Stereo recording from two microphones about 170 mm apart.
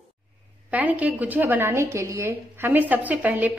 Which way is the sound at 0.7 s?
10° right (ahead or behind).